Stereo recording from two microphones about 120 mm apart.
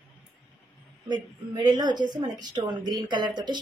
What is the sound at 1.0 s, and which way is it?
Speech, 35° right (ahead or behind).